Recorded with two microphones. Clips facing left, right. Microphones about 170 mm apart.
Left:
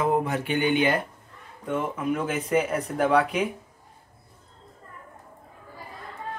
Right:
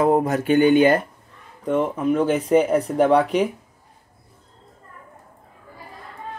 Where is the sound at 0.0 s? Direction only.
40° right (ahead or behind).